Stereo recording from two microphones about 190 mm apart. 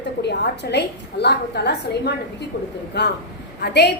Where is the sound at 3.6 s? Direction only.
60° left (ahead or behind).